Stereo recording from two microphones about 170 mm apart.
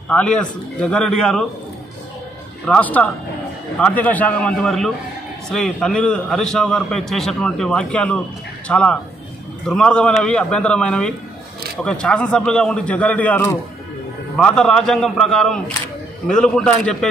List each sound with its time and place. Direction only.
0.1 s a man's voice: 5° left (ahead or behind)
2.6 s a man's voice: 5° left (ahead or behind)